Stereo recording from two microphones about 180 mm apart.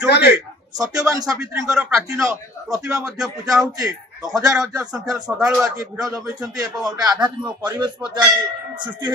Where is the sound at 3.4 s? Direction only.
20° right (ahead or behind).